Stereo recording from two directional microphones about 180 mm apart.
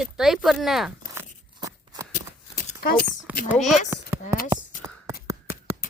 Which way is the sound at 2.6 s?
45° left (ahead or behind).